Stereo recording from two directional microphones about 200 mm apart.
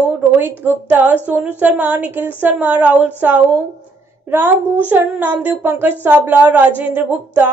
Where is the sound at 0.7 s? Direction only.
10° right (ahead or behind).